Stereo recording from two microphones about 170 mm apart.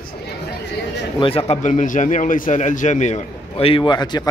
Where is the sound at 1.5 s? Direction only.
45° left (ahead or behind); by 4.3 s 25° left (ahead or behind).